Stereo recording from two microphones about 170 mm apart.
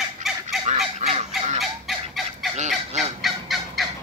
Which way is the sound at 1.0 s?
45° right (ahead or behind).